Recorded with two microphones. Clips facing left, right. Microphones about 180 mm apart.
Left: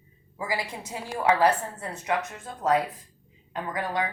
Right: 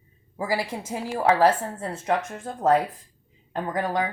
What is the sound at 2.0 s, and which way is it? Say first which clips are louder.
A woman's voice: right 3 dB; 50° right (ahead or behind).